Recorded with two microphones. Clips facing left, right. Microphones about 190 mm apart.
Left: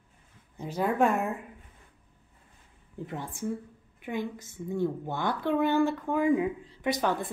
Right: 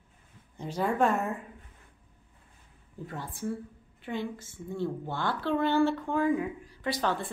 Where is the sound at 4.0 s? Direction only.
15° left (ahead or behind).